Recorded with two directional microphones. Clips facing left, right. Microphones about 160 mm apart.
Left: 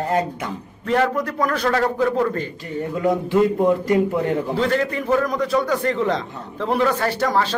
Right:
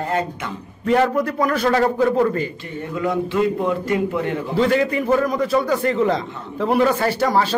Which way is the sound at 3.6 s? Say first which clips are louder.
Left 3 dB; 40° left (ahead or behind).